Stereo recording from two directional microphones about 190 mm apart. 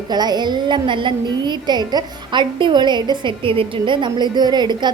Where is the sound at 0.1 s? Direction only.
20° right (ahead or behind).